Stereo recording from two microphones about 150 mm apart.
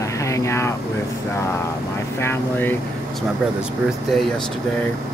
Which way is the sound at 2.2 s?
15° left (ahead or behind).